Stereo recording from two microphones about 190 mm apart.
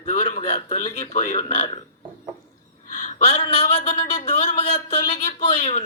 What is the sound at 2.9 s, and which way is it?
A man's voice, 40° left (ahead or behind).